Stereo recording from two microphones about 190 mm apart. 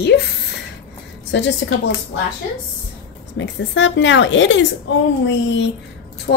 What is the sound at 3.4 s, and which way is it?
A woman's voice, 70° left (ahead or behind).